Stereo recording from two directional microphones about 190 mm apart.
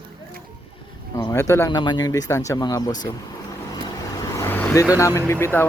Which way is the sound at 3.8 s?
20° left (ahead or behind).